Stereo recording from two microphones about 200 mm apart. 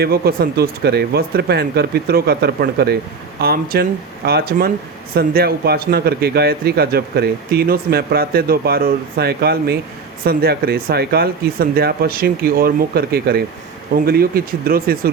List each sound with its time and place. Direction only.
0.0 s a man's voice: 50° right (ahead or behind)